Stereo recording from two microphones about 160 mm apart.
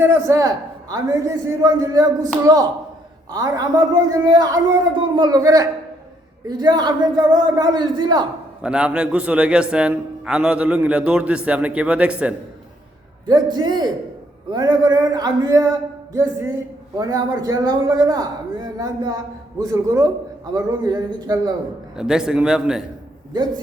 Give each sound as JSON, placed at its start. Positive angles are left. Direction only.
{"t": 0.0, "sound": "a man's voice", "side_deg": -15}
{"t": 8.6, "sound": "a man's voice", "side_deg": -5}
{"t": 13.2, "sound": "a man's voice", "side_deg": -25}
{"t": 21.9, "sound": "a man's voice", "side_deg": -5}